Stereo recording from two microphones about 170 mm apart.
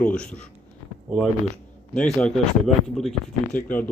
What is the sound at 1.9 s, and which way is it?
Speech, 5° left (ahead or behind).